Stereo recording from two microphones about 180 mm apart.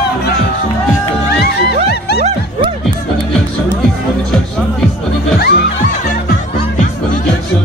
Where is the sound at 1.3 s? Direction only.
65° left (ahead or behind).